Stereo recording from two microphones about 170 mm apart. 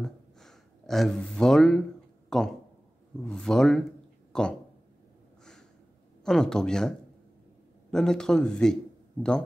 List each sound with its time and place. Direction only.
0.0 s a sound: centre (ahead or behind)
3.3 s speech: 5° left (ahead or behind)
5.4 s snort: 5° left (ahead or behind)
6.2 s speech: 5° left (ahead or behind)